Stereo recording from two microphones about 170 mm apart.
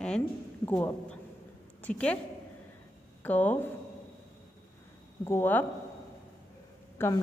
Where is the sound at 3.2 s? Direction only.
10° left (ahead or behind).